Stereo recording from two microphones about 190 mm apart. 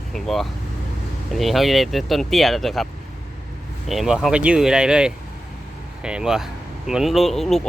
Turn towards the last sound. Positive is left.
turn(degrees=0)  # may be behind; listen again after turning